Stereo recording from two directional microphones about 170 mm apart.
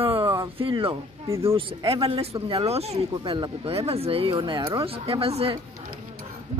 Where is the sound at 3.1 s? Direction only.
25° right (ahead or behind).